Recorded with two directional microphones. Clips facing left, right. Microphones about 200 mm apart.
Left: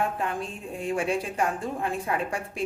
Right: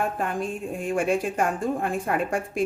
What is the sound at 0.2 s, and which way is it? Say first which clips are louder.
A woman's voice: right 3 dB; 50° right (ahead or behind).